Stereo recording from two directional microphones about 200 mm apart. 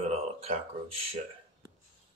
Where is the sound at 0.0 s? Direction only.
30° right (ahead or behind).